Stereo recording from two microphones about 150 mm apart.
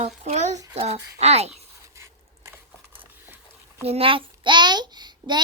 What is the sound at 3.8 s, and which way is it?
A child's voice, 40° right (ahead or behind).